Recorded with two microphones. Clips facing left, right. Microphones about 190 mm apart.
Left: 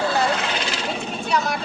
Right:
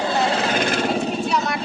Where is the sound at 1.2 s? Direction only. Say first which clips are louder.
Right 1 dB; centre (ahead or behind).